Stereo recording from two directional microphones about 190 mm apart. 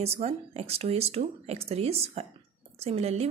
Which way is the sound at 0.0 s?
30° right (ahead or behind).